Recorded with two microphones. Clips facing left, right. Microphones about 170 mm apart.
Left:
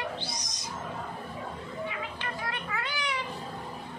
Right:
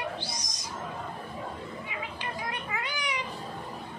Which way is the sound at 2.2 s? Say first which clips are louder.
Even; 15° right (ahead or behind).